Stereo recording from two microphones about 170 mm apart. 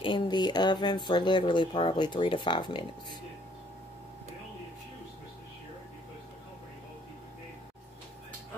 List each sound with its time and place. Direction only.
0.0 s speech: 25° left (ahead or behind)